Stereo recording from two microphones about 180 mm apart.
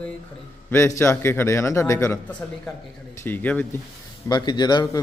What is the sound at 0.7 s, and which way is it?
A man's voice, 15° left (ahead or behind).